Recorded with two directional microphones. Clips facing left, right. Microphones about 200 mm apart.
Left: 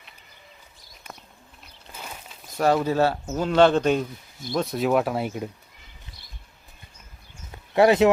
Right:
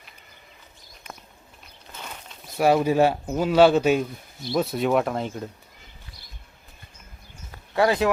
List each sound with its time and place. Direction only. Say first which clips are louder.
2.0 s walk: even; 5° left (ahead or behind)
2.6 s speech: right 2 dB; 10° right (ahead or behind); by 5.5 s 10° left (ahead or behind)
7.5 s clip-clop: left 4 dB; 20° left (ahead or behind)